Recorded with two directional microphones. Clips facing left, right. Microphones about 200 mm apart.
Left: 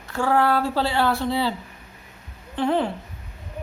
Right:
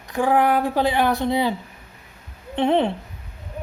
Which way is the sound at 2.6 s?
25° right (ahead or behind).